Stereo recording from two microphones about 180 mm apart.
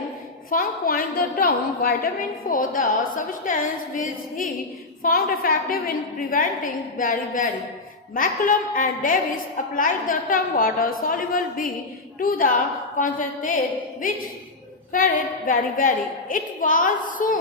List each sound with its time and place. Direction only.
0.5 s a woman's voice: 55° left (ahead or behind)